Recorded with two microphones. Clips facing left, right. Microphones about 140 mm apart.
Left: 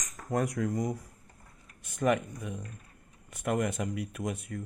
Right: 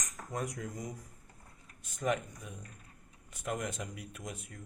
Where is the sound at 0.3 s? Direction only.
65° left (ahead or behind).